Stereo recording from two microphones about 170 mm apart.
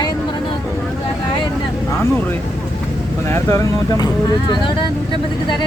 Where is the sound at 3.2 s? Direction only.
15° left (ahead or behind).